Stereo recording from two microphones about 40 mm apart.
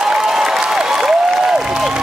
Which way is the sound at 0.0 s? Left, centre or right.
Centre.